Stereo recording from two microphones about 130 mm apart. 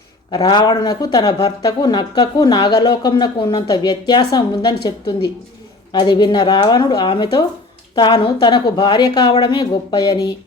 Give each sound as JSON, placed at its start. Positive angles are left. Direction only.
{"t": 0.3, "sound": "speech", "side_deg": 35}